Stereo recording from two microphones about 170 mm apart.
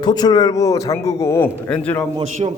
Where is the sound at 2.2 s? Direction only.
40° right (ahead or behind).